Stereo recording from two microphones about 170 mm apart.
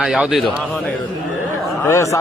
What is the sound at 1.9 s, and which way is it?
Speech, 15° left (ahead or behind).